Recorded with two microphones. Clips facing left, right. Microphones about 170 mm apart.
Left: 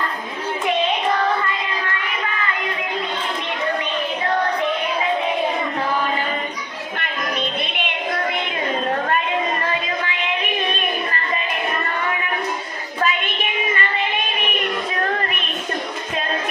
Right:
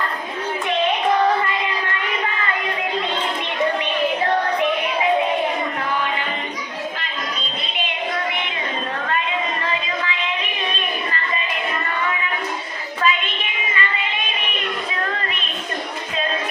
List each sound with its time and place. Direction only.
7.0 s music: 60° left (ahead or behind)
13.0 s child singing: 45° left (ahead or behind)